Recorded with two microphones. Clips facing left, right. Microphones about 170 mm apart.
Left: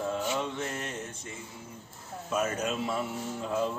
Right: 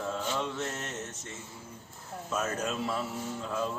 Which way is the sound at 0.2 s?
10° left (ahead or behind).